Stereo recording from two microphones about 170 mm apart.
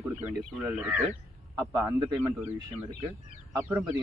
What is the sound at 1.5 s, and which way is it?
Speech, 20° right (ahead or behind).